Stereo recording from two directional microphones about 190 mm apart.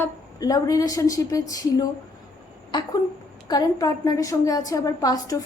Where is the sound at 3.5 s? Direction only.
20° left (ahead or behind).